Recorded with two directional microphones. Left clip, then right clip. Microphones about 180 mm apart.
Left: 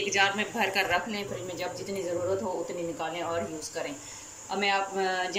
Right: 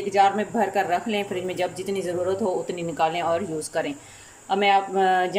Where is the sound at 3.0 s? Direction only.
55° right (ahead or behind).